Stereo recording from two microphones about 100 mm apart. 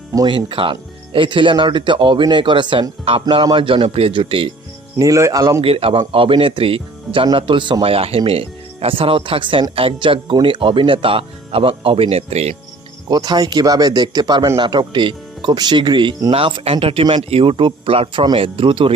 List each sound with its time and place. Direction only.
0.3 s speech: 55° right (ahead or behind)
3.0 s speech: 65° right (ahead or behind); by 4.1 s 85° right
4.1 s speech: 55° right (ahead or behind)
4.9 s speech: 35° right (ahead or behind)
5.6 s a man's voice: 70° right (ahead or behind); by 12.5 s 90° right
13.1 s speech: 45° right (ahead or behind)
16.3 s speech: 60° right (ahead or behind)
17.2 s speech: 75° right (ahead or behind)